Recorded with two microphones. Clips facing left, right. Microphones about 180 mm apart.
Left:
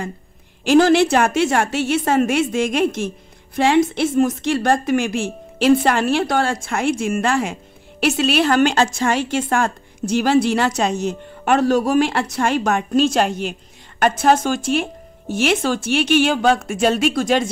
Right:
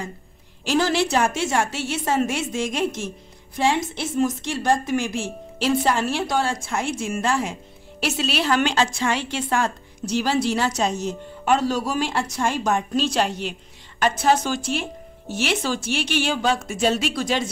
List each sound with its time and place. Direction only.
0.7 s a woman's voice: 55° left (ahead or behind)
13.0 s speech: 50° left (ahead or behind)